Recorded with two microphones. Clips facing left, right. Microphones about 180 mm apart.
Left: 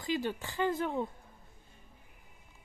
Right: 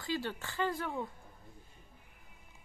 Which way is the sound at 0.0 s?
20° left (ahead or behind).